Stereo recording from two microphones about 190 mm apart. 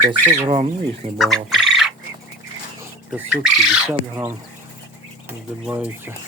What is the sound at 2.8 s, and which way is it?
Speech, 10° right (ahead or behind).